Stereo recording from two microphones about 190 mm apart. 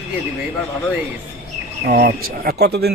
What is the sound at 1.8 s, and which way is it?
Speech, 60° right (ahead or behind).